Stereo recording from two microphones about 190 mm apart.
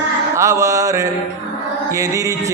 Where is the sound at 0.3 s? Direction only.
15° right (ahead or behind).